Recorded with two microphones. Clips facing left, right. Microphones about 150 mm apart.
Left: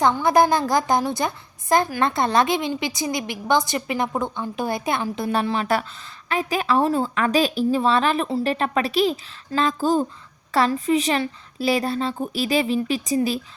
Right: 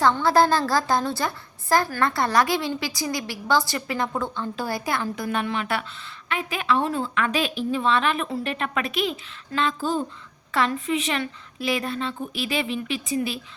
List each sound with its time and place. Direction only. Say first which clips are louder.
0.0 s a woman's voice: left 1 dB; 20° left (ahead or behind); by 13.4 s 40° left (ahead or behind)